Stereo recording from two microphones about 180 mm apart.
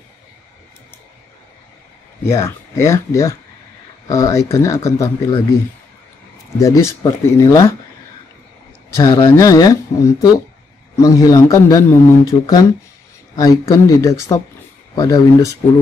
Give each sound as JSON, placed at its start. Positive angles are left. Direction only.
{"t": 2.2, "sound": "speech", "side_deg": 15}
{"t": 6.6, "sound": "speech", "side_deg": 15}
{"t": 8.9, "sound": "speech", "side_deg": 20}